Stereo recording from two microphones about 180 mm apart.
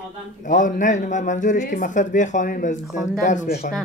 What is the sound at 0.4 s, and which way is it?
Speech, 45° left (ahead or behind).